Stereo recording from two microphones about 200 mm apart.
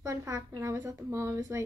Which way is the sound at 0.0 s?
15° right (ahead or behind).